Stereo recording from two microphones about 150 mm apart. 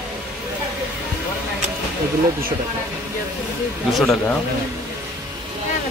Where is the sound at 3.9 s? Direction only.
Centre (ahead or behind).